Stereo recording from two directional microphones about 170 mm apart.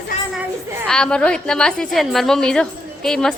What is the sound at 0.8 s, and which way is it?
A woman's voice, 5° left (ahead or behind).